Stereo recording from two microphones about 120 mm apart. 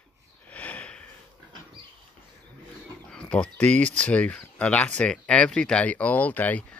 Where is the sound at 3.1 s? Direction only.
10° left (ahead or behind).